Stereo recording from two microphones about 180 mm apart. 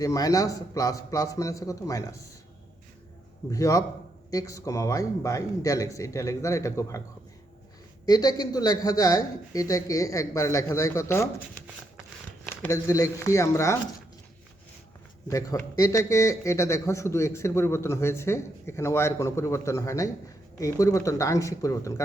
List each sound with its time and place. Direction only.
0.0 s speech: 20° left (ahead or behind)
3.5 s a man's voice: 20° left (ahead or behind)
8.0 s speech: 20° left (ahead or behind)
12.6 s a man's voice: 15° left (ahead or behind)
15.3 s a man's voice: 20° left (ahead or behind)